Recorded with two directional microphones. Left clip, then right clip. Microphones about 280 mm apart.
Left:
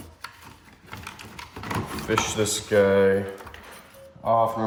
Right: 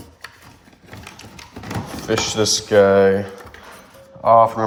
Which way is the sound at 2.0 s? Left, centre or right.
Centre.